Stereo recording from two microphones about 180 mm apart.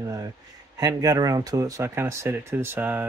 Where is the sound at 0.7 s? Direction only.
20° right (ahead or behind).